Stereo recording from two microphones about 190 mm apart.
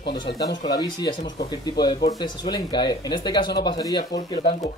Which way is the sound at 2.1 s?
20° left (ahead or behind).